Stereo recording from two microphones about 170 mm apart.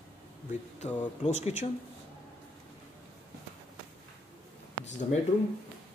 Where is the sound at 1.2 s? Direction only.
40° left (ahead or behind).